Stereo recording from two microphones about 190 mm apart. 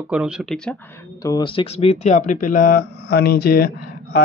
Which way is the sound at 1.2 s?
20° left (ahead or behind).